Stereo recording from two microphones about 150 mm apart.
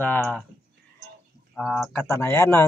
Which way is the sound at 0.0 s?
10° left (ahead or behind).